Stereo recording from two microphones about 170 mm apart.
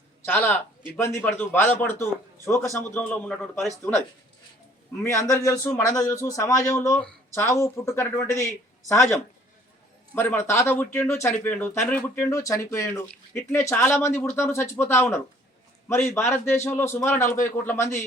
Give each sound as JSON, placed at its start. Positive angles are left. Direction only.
{"t": 0.3, "sound": "speech", "side_deg": 10}
{"t": 5.0, "sound": "speech", "side_deg": 15}
{"t": 10.2, "sound": "speech", "side_deg": 15}